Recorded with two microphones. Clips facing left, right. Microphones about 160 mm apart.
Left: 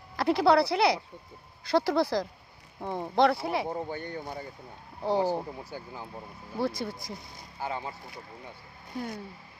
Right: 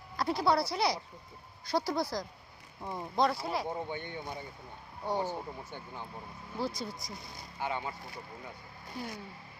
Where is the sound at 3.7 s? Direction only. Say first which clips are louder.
Left 3 dB; 35° left (ahead or behind).